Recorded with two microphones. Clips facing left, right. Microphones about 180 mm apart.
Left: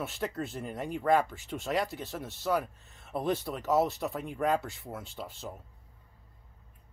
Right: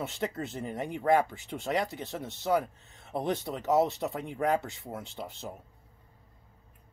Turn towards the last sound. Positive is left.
turn(degrees=-20)  # may be behind; listen again after turning